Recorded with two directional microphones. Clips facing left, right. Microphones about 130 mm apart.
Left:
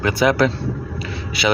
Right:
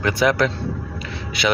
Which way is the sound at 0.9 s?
Centre (ahead or behind).